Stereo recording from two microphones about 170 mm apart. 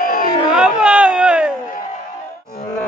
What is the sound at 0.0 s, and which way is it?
Chatter, 55° left (ahead or behind).